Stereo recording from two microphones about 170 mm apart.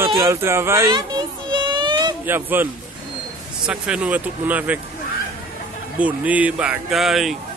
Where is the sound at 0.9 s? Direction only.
25° right (ahead or behind).